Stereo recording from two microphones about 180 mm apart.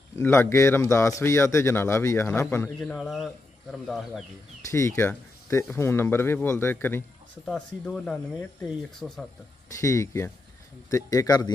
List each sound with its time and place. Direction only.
0.2 s a man's voice: 15° left (ahead or behind)
4.6 s a man's voice: 15° left (ahead or behind)
9.7 s speech: 15° left (ahead or behind)